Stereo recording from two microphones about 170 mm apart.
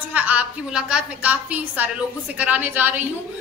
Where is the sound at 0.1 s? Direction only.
10° right (ahead or behind).